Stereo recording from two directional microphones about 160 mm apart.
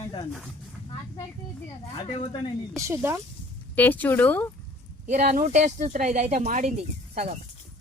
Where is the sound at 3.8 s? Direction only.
10° left (ahead or behind).